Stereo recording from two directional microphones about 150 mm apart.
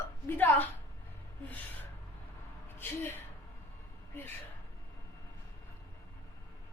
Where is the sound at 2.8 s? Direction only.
15° left (ahead or behind).